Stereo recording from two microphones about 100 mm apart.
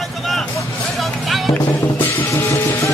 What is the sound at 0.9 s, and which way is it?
Music, centre (ahead or behind).